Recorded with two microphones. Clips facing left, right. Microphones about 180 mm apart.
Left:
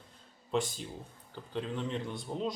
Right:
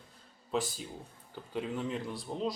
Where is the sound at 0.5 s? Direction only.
5° right (ahead or behind).